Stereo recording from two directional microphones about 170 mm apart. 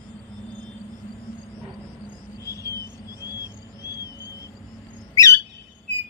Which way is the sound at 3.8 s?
20° left (ahead or behind).